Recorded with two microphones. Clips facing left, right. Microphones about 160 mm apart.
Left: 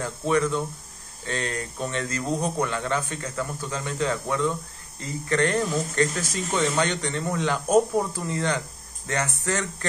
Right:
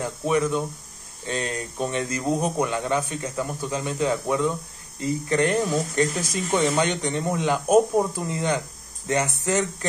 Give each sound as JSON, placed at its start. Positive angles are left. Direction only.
{"t": 0.0, "sound": "speech", "side_deg": -15}